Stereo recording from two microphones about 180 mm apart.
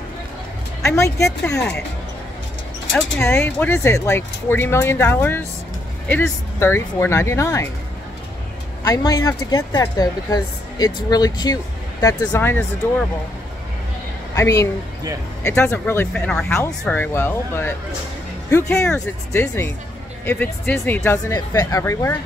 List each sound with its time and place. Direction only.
0.8 s speech: 15° left (ahead or behind)
3.2 s speech: 15° left (ahead or behind)
8.8 s speech: 20° left (ahead or behind)
14.3 s a woman's voice: 15° left (ahead or behind)